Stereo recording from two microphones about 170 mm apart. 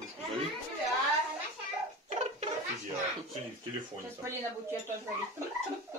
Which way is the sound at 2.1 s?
40° right (ahead or behind).